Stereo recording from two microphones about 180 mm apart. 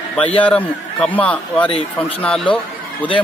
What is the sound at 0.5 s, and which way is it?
A man's voice, 5° left (ahead or behind).